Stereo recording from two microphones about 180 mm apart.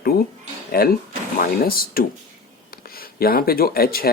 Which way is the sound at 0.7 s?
55° left (ahead or behind).